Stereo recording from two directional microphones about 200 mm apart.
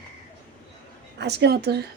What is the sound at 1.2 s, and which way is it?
Speech, 55° right (ahead or behind).